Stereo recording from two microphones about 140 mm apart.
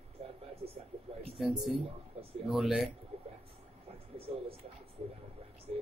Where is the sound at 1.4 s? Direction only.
Centre (ahead or behind).